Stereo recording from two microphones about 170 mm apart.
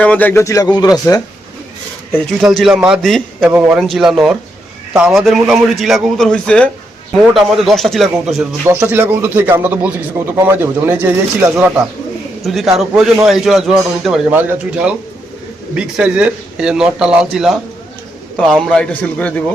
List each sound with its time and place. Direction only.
0.0 s a man's voice: 10° left (ahead or behind)
2.4 s a man's voice: centre (ahead or behind)
3.4 s a man's voice: 10° right (ahead or behind)
8.8 s a man's voice: 10° right (ahead or behind)
12.5 s a man's voice: centre (ahead or behind)
18.6 s a man's voice: 5° left (ahead or behind)